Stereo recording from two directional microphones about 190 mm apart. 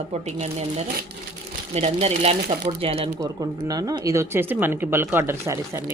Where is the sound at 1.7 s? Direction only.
35° right (ahead or behind).